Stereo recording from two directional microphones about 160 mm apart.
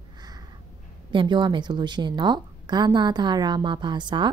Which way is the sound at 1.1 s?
30° right (ahead or behind).